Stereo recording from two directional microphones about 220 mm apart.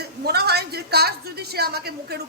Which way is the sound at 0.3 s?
45° right (ahead or behind).